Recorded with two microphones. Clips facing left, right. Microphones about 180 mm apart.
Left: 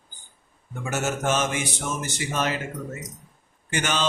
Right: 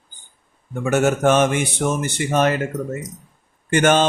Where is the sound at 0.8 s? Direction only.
60° right (ahead or behind).